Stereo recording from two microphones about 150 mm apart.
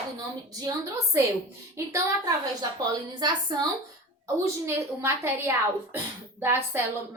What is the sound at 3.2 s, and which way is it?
Speech, 30° right (ahead or behind).